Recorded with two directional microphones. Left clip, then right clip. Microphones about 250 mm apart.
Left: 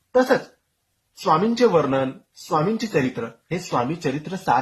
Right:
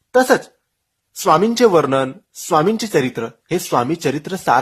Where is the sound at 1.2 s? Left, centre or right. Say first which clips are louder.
Right 5 dB; right.